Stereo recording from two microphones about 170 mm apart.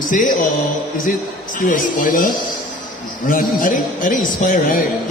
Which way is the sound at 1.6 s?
55° left (ahead or behind).